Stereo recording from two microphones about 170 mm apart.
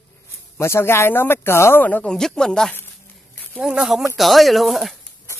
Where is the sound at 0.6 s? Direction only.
15° left (ahead or behind).